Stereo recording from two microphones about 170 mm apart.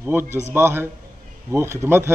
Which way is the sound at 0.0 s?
15° right (ahead or behind).